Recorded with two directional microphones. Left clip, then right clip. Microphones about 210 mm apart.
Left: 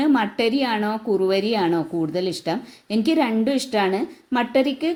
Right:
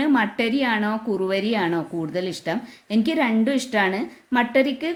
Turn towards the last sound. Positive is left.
turn(degrees=0)  # may be behind; listen again after turning